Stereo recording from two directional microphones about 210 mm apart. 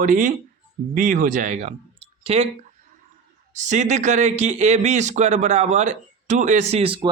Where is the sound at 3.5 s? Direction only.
35° right (ahead or behind).